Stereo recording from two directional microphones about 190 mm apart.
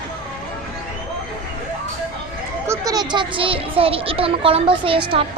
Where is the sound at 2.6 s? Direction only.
20° right (ahead or behind).